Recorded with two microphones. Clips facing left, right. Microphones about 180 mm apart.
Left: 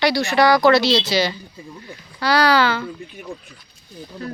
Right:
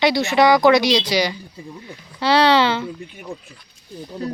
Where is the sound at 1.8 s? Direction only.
25° right (ahead or behind).